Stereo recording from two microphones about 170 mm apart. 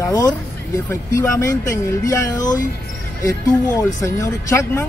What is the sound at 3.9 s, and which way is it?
Speech, 20° left (ahead or behind).